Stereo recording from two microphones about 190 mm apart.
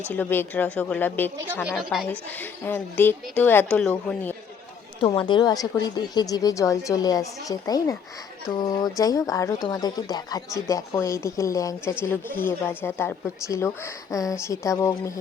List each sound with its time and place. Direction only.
0.1 s speech: 10° left (ahead or behind)
1.6 s speech: 5° right (ahead or behind)
2.0 s speech: 10° left (ahead or behind)
4.9 s a woman's voice: 25° left (ahead or behind)